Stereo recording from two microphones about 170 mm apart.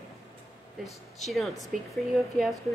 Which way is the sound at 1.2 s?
Centre (ahead or behind).